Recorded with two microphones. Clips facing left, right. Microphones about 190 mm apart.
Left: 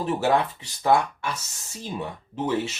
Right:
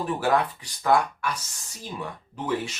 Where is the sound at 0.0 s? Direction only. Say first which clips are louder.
Left 1 dB; 25° left (ahead or behind).